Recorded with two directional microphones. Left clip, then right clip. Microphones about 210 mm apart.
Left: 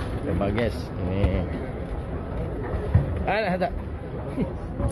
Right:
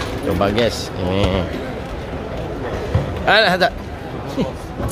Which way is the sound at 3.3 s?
15° right (ahead or behind).